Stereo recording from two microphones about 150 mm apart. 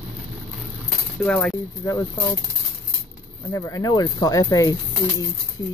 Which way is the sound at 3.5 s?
20° left (ahead or behind).